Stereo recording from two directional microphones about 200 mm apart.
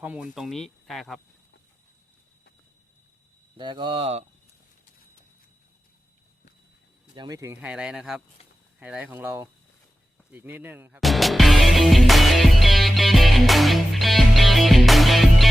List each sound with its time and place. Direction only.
0.0 s speech: 5° right (ahead or behind)
3.6 s speech: 25° right (ahead or behind)
7.2 s speech: 15° right (ahead or behind)
10.3 s music: 10° right (ahead or behind)